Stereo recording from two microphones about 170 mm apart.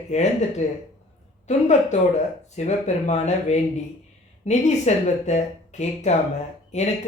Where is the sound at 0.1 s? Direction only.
45° left (ahead or behind).